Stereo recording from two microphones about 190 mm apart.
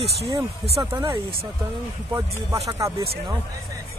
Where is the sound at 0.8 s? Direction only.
15° right (ahead or behind).